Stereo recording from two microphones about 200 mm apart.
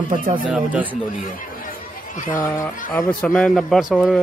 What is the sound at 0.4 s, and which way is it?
Speech, 5° right (ahead or behind).